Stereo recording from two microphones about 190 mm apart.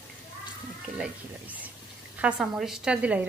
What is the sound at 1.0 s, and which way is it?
A woman's voice, 10° right (ahead or behind).